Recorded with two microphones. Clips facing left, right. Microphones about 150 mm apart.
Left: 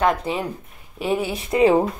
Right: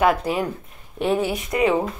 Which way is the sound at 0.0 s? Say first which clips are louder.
Right 1 dB; 5° right (ahead or behind).